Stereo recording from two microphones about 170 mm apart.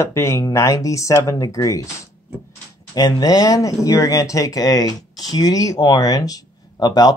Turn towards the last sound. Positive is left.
turn(degrees=25)  # may be behind; listen again after turning